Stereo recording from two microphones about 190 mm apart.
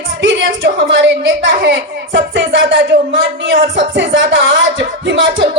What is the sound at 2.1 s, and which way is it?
Music, 80° right.